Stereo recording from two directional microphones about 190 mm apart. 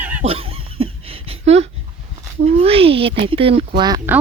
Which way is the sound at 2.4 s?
30° right (ahead or behind).